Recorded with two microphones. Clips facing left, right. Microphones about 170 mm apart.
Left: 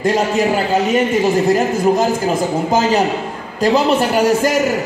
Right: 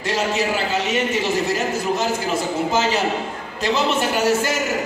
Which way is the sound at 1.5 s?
45° left (ahead or behind).